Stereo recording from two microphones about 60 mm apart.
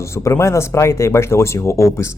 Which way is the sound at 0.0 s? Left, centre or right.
Left.